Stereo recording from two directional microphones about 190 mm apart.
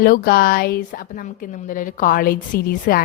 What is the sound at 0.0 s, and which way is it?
A woman's voice, 55° left (ahead or behind).